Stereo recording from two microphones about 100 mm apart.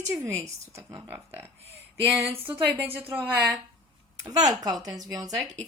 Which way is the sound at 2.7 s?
20° right (ahead or behind).